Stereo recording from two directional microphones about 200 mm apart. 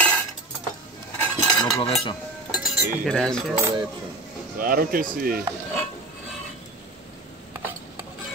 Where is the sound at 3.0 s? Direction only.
5° left (ahead or behind).